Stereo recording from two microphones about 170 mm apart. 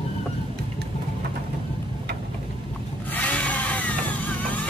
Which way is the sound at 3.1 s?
10° left (ahead or behind).